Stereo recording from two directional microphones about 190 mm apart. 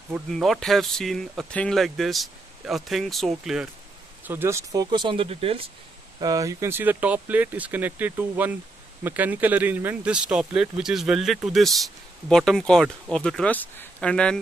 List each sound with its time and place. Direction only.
0.3 s speech: centre (ahead or behind)
4.2 s speech: 10° right (ahead or behind); by 5.7 s 30° right (ahead or behind)
6.1 s speech: 20° right (ahead or behind); by 14.4 s 5° left (ahead or behind)